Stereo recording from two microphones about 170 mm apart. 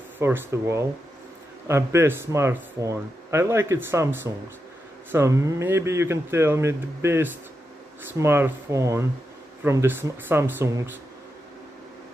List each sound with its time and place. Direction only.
0.2 s speech: 15° right (ahead or behind)